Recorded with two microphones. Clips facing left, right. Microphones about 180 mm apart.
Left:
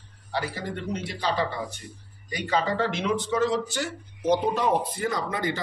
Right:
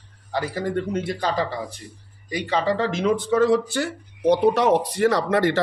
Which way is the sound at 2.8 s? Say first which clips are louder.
Right 4 dB; 45° right (ahead or behind).